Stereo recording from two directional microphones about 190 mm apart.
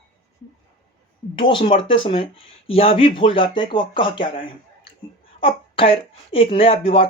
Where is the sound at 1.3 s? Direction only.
25° left (ahead or behind).